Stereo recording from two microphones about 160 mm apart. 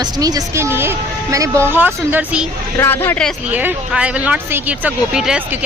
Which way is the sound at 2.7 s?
15° left (ahead or behind).